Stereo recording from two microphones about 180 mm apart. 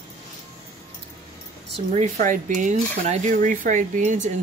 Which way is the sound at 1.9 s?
45° right (ahead or behind).